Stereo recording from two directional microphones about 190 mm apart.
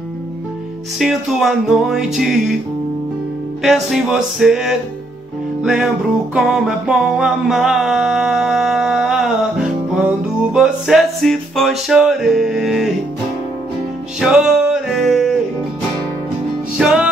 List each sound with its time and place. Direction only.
0.9 s music: centre (ahead or behind)
3.6 s music: centre (ahead or behind)
14.2 s music: 5° right (ahead or behind)
16.7 s music: 5° right (ahead or behind)